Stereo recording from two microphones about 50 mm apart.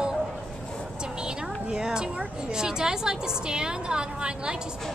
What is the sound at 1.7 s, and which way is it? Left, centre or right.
A woman's voice, centre.